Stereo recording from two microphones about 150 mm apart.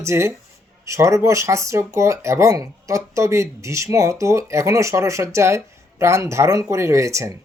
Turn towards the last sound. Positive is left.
turn(degrees=-20)  # may be behind; listen again after turning